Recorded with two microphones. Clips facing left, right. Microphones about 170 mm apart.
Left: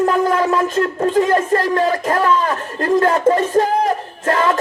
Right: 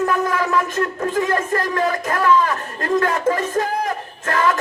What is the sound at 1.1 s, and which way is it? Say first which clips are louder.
Speech: left 5 dB; 30° left (ahead or behind).